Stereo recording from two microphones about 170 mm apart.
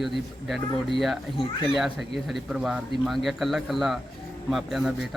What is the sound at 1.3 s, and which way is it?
Speech, 30° left (ahead or behind).